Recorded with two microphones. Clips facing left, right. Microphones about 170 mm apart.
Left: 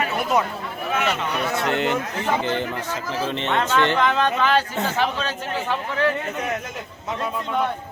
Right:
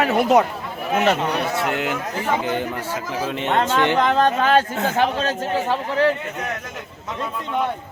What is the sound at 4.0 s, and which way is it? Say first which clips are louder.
A man's voice: right 2 dB; 40° right (ahead or behind).